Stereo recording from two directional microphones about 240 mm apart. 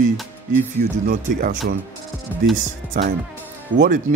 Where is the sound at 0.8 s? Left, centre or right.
Right.